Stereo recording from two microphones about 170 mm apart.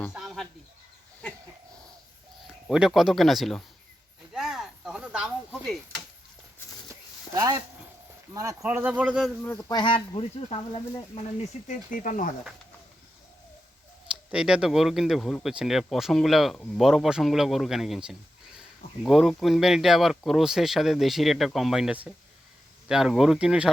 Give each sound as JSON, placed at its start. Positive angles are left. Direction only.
{"t": 0.1, "sound": "a sound", "side_deg": 0}
{"t": 2.6, "sound": "speech", "side_deg": -5}
{"t": 4.3, "sound": "a sound", "side_deg": 0}
{"t": 8.3, "sound": "speech", "side_deg": -20}
{"t": 9.4, "sound": "speech", "side_deg": 10}
{"t": 9.7, "sound": "speech", "side_deg": 30}
{"t": 11.7, "sound": "speech", "side_deg": 50}
{"t": 14.3, "sound": "speech", "side_deg": -5}